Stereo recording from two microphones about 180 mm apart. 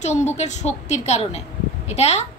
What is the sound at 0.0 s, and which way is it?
A woman's voice, 40° left (ahead or behind).